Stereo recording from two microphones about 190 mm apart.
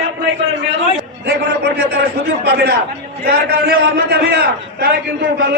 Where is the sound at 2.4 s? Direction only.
60° right (ahead or behind).